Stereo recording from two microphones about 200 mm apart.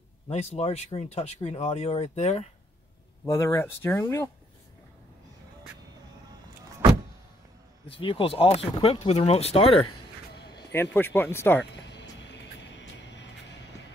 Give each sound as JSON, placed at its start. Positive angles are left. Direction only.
{"t": 0.3, "sound": "speech", "side_deg": 30}
{"t": 3.3, "sound": "speech", "side_deg": 15}
{"t": 8.0, "sound": "speech", "side_deg": 25}
{"t": 10.3, "sound": "a sound", "side_deg": 55}
{"t": 10.7, "sound": "speech", "side_deg": 10}
{"t": 11.7, "sound": "music", "side_deg": 60}